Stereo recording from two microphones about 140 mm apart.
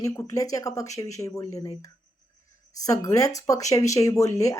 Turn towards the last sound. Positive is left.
turn(degrees=25)  # may be behind; listen again after turning